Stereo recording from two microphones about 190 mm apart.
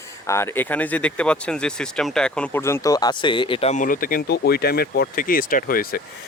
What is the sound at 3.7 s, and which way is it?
Speech, 45° left (ahead or behind).